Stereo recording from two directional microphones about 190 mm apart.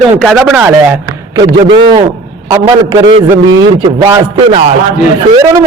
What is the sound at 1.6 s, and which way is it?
Speech, 25° right (ahead or behind).